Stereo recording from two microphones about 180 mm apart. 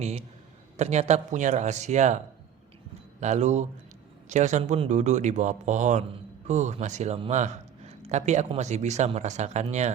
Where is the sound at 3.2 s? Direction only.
40° right (ahead or behind).